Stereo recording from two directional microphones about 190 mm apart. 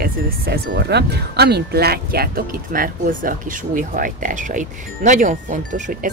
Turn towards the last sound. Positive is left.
turn(degrees=-40)  # may be behind; listen again after turning